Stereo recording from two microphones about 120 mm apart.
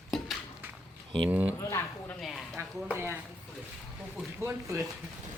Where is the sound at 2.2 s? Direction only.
Centre (ahead or behind).